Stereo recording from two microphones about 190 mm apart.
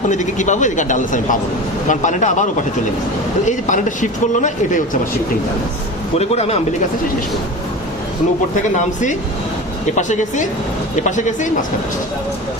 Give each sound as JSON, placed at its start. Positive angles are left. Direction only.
{"t": 0.1, "sound": "speech", "side_deg": 40}
{"t": 3.4, "sound": "speech", "side_deg": 40}
{"t": 6.1, "sound": "speech", "side_deg": 35}
{"t": 9.9, "sound": "speech", "side_deg": 40}